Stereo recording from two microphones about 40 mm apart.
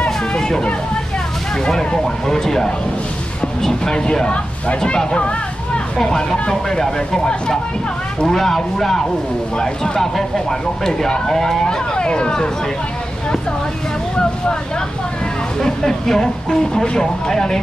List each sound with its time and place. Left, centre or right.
0.0 s hubbub: centre
1.6 s speech: centre
3.9 s speech: left
8.3 s speech: centre
15.6 s speech: centre